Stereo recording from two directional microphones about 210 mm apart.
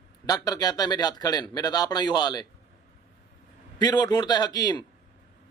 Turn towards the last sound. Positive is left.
turn(degrees=20)  # may be behind; listen again after turning